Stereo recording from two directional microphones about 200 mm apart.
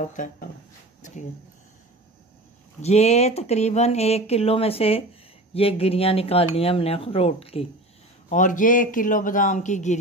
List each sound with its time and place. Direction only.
0.0 s speech: 40° left (ahead or behind)
2.8 s speech: 35° left (ahead or behind)
8.3 s speech: 40° left (ahead or behind)